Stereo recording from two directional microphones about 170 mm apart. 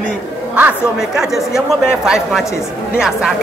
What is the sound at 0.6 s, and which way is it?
A man's voice, 10° right (ahead or behind).